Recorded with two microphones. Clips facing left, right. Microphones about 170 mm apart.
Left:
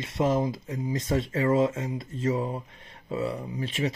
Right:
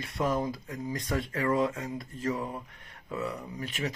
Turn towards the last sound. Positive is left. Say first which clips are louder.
# left 5 dB
turn(degrees=25)  # may be behind; listen again after turning